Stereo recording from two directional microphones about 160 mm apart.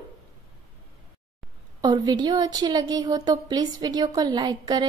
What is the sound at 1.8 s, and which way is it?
Speech, 25° right (ahead or behind).